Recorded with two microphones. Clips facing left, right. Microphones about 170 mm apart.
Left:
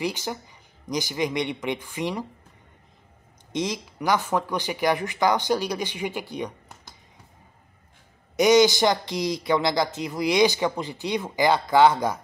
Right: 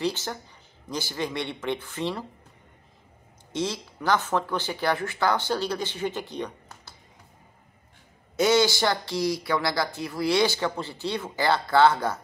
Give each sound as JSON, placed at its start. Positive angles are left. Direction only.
{"t": 0.0, "sound": "speech", "side_deg": 15}
{"t": 3.5, "sound": "speech", "side_deg": 15}
{"t": 8.4, "sound": "speech", "side_deg": 15}